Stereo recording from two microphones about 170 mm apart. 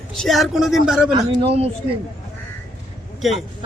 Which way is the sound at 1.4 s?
35° right (ahead or behind).